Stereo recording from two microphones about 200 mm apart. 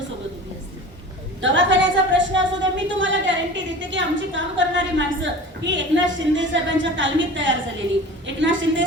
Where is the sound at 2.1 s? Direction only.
70° right (ahead or behind).